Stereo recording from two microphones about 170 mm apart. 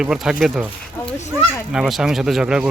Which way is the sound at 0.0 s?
5° right (ahead or behind).